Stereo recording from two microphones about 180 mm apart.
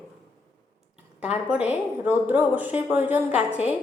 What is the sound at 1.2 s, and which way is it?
A woman's voice, 5° right (ahead or behind).